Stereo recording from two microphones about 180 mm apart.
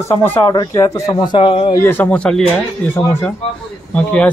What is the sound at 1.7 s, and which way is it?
A man's voice, 10° left (ahead or behind).